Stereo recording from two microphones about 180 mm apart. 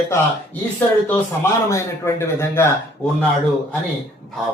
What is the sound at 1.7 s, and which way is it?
A man's voice, 15° left (ahead or behind).